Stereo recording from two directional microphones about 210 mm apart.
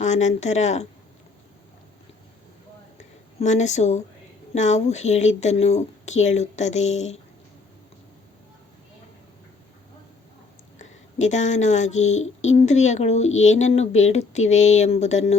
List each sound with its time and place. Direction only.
0.0 s speech: 35° left (ahead or behind)
3.4 s speech: 35° left (ahead or behind)
10.8 s speech: 35° left (ahead or behind)
12.1 s a sound: 70° left (ahead or behind)
12.5 s speech: 35° left (ahead or behind)